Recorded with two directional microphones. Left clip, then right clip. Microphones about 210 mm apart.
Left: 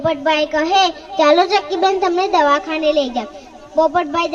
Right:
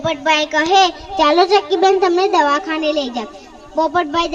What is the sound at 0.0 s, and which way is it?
Speech, 35° right (ahead or behind).